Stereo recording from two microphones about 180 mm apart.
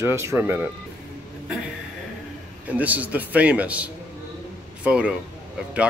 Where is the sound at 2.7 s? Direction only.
10° right (ahead or behind).